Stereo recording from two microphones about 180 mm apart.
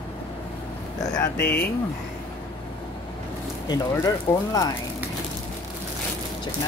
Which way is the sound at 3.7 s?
20° left (ahead or behind).